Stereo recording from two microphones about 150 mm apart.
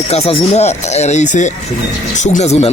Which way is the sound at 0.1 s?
45° left (ahead or behind).